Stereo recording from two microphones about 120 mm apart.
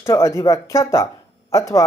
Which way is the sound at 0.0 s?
25° left (ahead or behind).